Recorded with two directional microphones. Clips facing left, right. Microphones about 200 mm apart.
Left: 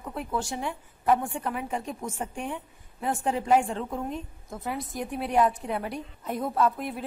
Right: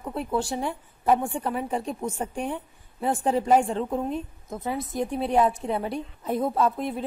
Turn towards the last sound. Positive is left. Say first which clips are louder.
# right 2 dB
turn(degrees=-25)  # may be behind; listen again after turning